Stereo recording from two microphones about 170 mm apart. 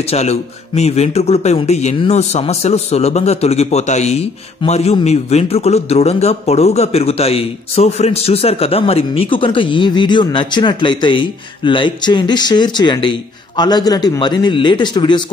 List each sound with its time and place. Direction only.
0.0 s a man's voice: 40° left (ahead or behind)